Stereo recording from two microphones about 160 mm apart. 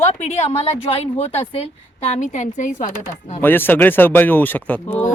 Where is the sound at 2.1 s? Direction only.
50° left (ahead or behind).